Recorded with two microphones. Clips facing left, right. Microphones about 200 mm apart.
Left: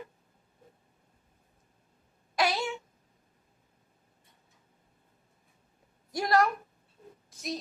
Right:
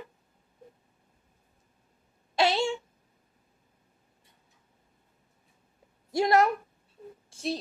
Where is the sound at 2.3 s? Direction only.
25° right (ahead or behind).